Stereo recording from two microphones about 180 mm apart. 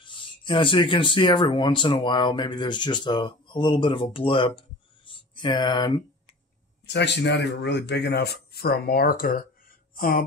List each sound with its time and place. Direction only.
0.0 s speech: 25° left (ahead or behind)
6.9 s speech: 70° left (ahead or behind); by 10.2 s 50° left (ahead or behind)